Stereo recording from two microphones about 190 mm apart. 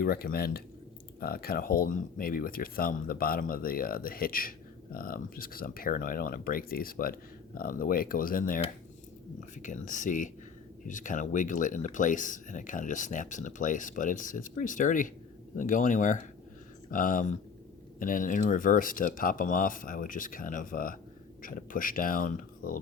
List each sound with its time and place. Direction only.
0.0 s speech: 50° left (ahead or behind)